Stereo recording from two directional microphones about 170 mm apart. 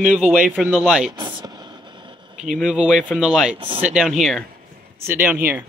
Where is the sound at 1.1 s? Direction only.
25° right (ahead or behind).